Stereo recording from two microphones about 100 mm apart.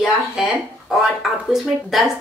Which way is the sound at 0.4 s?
5° right (ahead or behind).